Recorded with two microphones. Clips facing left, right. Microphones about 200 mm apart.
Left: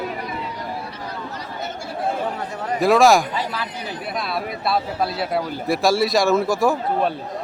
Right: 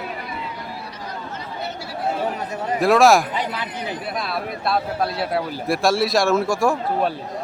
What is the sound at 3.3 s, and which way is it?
Speech, 20° right (ahead or behind).